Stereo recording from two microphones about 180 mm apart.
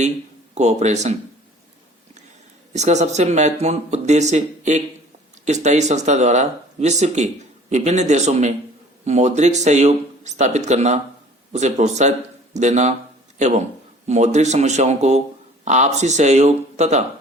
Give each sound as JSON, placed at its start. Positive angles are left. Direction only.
{"t": 0.5, "sound": "speech", "side_deg": -40}
{"t": 2.7, "sound": "speech", "side_deg": -40}
{"t": 14.1, "sound": "speech", "side_deg": -40}